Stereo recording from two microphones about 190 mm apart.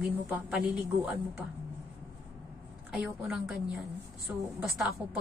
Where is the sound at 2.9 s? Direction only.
5° right (ahead or behind).